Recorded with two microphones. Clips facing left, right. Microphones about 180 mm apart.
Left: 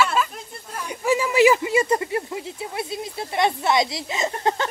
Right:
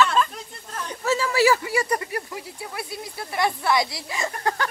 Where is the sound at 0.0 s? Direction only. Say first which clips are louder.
Right 1 dB; 5° left (ahead or behind).